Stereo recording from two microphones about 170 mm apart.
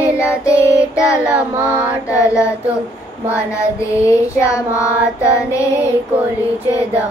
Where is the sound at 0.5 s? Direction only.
15° left (ahead or behind).